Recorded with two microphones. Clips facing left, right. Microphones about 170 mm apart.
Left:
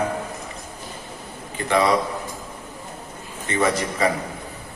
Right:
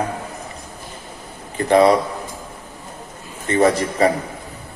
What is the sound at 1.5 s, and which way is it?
Speech, 35° right (ahead or behind).